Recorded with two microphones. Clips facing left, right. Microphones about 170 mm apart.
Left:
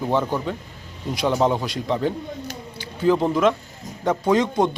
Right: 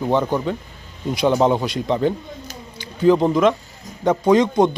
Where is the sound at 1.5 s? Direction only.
Centre (ahead or behind).